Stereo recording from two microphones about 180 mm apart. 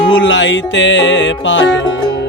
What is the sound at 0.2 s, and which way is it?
Music, 90° left.